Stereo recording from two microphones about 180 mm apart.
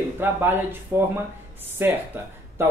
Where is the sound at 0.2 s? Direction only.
10° right (ahead or behind).